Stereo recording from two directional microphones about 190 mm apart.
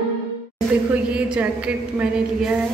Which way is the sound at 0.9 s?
5° right (ahead or behind).